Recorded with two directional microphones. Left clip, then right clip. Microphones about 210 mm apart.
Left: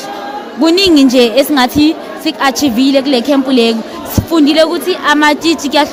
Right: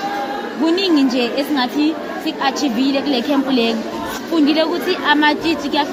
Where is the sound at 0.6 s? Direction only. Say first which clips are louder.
Left 8 dB; 55° left (ahead or behind).